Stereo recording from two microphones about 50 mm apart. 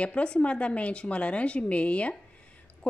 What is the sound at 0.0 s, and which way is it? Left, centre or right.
A woman's voice, left.